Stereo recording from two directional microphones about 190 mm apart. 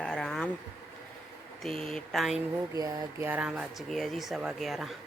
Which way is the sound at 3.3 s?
5° right (ahead or behind).